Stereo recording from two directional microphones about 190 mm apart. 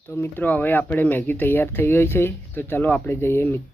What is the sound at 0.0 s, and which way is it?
Speech, 10° left (ahead or behind).